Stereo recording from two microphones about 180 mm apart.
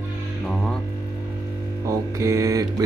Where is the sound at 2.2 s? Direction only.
15° right (ahead or behind).